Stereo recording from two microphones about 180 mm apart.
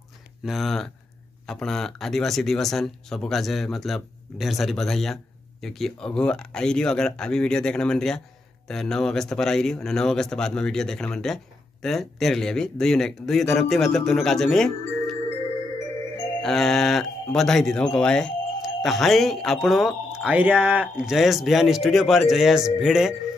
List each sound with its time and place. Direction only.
0.5 s speech: centre (ahead or behind)
16.3 s speech: centre (ahead or behind)